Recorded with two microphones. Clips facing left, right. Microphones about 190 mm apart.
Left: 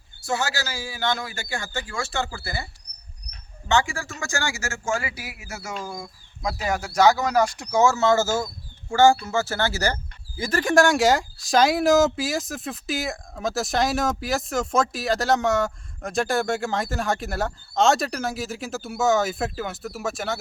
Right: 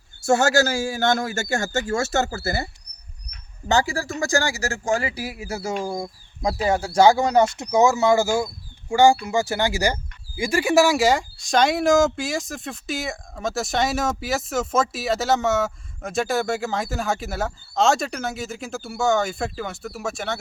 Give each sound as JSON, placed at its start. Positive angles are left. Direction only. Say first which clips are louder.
{"t": 0.3, "sound": "a man's voice", "louder": "right 9 dB", "side_deg": -45}
{"t": 3.7, "sound": "speech", "louder": "right 2 dB", "side_deg": -35}